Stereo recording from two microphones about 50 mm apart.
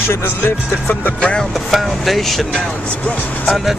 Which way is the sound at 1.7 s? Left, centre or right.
Centre.